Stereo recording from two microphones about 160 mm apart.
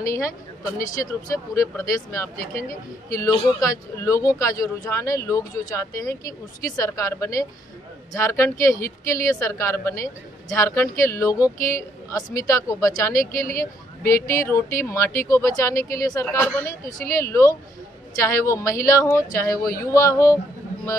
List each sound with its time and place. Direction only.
0.0 s a woman's voice: 20° left (ahead or behind)
1.3 s a woman's voice: 20° left (ahead or behind)